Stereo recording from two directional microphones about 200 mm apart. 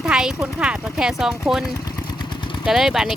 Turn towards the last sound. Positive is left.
turn(degrees=0)  # may be behind; listen again after turning